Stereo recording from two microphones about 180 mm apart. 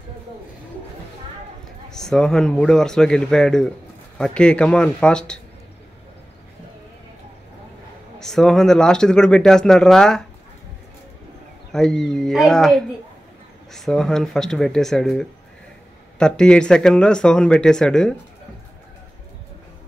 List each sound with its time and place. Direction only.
1.9 s speech: 5° left (ahead or behind)
8.2 s speech: 5° left (ahead or behind)
11.7 s speech: centre (ahead or behind)